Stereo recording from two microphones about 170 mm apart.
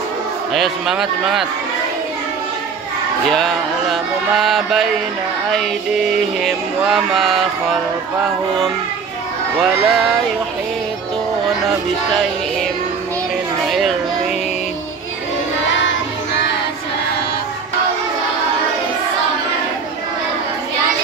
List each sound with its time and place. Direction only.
0.5 s music: centre (ahead or behind)
3.3 s music: centre (ahead or behind)
6.4 s music: centre (ahead or behind)
9.8 s music: centre (ahead or behind)
13.7 s children playing: centre (ahead or behind)